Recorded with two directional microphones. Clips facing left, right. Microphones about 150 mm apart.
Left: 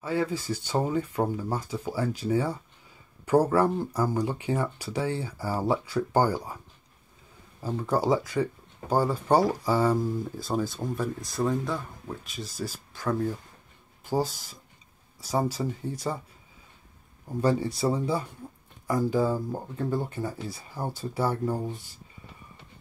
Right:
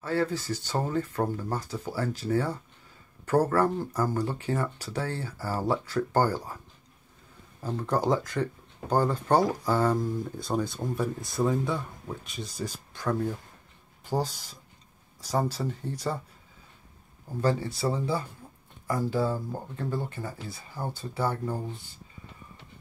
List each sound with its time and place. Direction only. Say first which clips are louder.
0.0 s speech: even; 10° left (ahead or behind)
7.6 s speech: left 1 dB; 5° left (ahead or behind)
17.4 s speech: left 2 dB; 25° left (ahead or behind)
17.8 s speech: left 2 dB; centre (ahead or behind)
19.0 s speech: left 2 dB; 15° left (ahead or behind)